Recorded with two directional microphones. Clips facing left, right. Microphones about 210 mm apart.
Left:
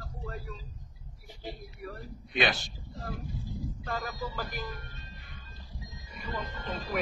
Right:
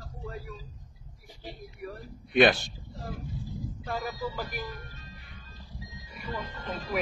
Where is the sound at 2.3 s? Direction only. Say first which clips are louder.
Right 8 dB; 55° right (ahead or behind).